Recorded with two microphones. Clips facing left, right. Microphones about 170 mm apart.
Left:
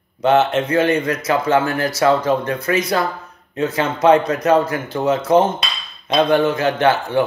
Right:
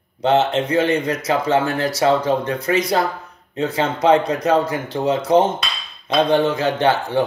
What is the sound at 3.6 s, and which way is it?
Speech, 25° right (ahead or behind).